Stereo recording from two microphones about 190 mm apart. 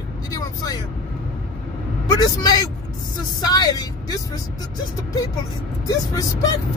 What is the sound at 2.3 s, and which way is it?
Speech, 20° left (ahead or behind).